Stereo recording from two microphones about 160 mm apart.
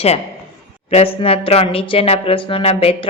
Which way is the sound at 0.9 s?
40° left (ahead or behind).